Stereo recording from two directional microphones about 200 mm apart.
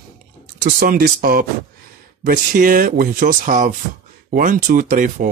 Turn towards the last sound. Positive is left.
turn(degrees=-45)  # may be behind; listen again after turning